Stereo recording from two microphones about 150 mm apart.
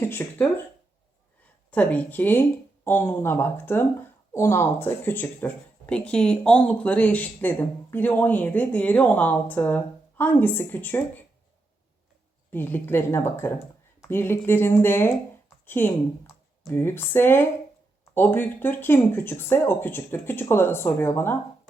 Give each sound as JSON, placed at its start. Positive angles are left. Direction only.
{"t": 0.0, "sound": "speech", "side_deg": 15}
{"t": 1.7, "sound": "speech", "side_deg": 10}
{"t": 12.5, "sound": "speech", "side_deg": 15}